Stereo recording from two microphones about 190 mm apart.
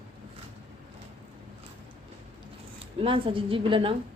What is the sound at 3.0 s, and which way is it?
Speech, 30° right (ahead or behind).